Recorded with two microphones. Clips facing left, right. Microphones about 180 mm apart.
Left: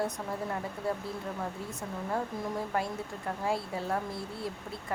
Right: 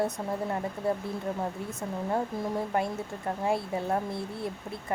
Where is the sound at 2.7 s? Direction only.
25° right (ahead or behind).